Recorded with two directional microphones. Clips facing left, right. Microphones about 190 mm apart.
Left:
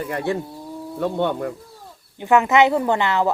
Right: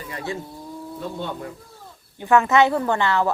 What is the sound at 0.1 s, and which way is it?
Speech, 60° left (ahead or behind).